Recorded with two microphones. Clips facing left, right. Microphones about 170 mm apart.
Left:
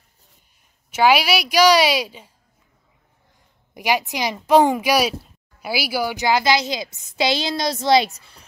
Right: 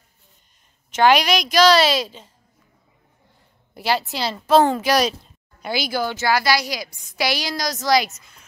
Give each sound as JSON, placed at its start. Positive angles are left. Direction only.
{"t": 0.9, "sound": "a woman's voice", "side_deg": 5}
{"t": 3.7, "sound": "speech", "side_deg": 15}